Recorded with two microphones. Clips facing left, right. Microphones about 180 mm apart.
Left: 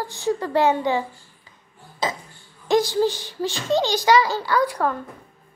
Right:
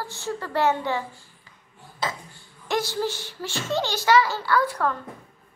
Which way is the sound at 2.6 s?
15° left (ahead or behind).